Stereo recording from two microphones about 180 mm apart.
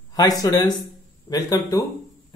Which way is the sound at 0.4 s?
20° left (ahead or behind).